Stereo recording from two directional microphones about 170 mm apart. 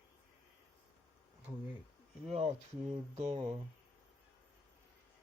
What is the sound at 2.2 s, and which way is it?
Speech, 35° right (ahead or behind).